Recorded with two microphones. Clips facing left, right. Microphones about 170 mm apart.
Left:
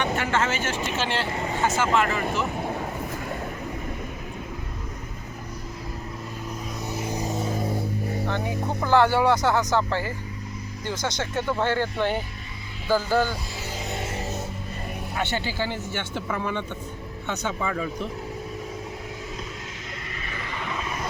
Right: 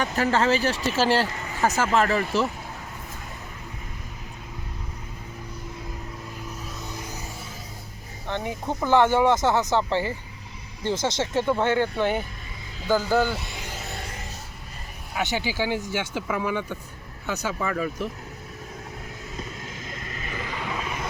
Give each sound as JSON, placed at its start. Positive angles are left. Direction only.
{"t": 0.0, "sound": "speech", "side_deg": -35}
{"t": 1.3, "sound": "vehicle", "side_deg": 30}
{"t": 1.6, "sound": "speech", "side_deg": -35}
{"t": 6.8, "sound": "vehicle", "side_deg": 25}
{"t": 8.8, "sound": "speech", "side_deg": -20}
{"t": 13.7, "sound": "music", "side_deg": 20}
{"t": 15.1, "sound": "speech", "side_deg": -10}